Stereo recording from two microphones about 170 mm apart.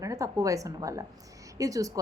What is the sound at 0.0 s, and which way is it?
A woman's voice, 20° right (ahead or behind).